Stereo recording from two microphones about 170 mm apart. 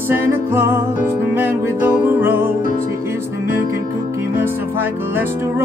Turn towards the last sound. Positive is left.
turn(degrees=-10)  # may be behind; listen again after turning